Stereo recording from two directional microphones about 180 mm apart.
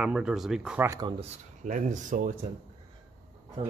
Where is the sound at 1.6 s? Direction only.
45° right (ahead or behind).